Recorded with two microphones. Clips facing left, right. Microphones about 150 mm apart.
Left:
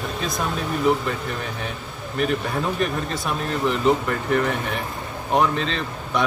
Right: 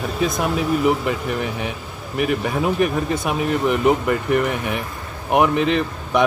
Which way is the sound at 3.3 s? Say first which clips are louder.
Right 3 dB; 15° right (ahead or behind).